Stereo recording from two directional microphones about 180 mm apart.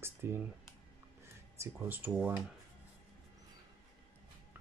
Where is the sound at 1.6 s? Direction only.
10° right (ahead or behind).